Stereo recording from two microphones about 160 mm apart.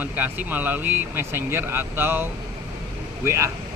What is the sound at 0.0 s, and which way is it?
Speech, 10° right (ahead or behind).